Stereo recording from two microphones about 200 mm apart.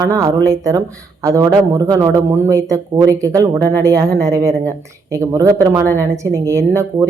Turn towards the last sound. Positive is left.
turn(degrees=-15)  # may be behind; listen again after turning